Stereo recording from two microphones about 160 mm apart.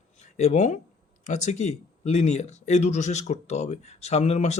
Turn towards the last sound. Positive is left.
turn(degrees=45)  # may be behind; listen again after turning